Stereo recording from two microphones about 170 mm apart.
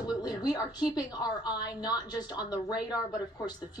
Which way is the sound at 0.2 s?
20° left (ahead or behind).